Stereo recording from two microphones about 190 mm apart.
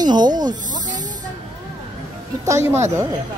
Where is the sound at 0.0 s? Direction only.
20° right (ahead or behind).